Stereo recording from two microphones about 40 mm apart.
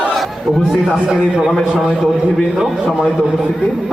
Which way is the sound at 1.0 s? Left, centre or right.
Centre.